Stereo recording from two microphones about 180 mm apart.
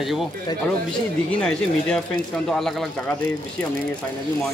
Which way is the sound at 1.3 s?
5° left (ahead or behind).